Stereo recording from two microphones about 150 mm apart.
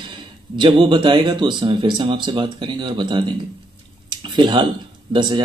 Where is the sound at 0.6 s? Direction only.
35° right (ahead or behind).